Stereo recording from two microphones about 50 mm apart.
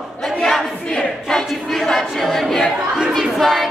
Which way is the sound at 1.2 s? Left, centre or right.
Centre.